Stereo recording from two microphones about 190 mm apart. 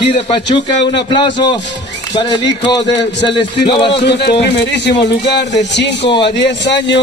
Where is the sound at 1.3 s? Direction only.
25° left (ahead or behind).